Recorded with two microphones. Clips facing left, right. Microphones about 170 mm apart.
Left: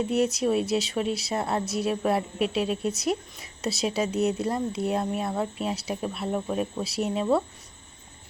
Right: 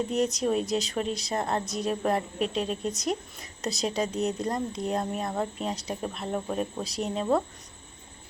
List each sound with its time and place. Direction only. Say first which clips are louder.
0.1 s speech: left 3 dB; 5° left (ahead or behind)